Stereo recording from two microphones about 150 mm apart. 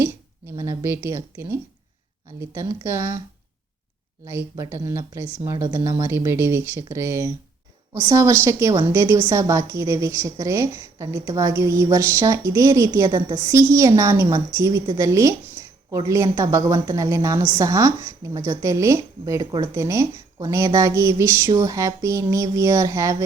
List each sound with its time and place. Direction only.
0.0 s a woman's voice: 15° right (ahead or behind)
4.3 s a woman's voice: 20° right (ahead or behind)